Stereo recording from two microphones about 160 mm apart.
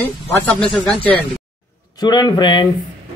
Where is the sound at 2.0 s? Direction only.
25° left (ahead or behind).